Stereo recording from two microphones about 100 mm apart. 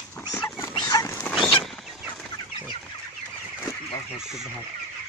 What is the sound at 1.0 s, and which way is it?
Dog, 20° left (ahead or behind).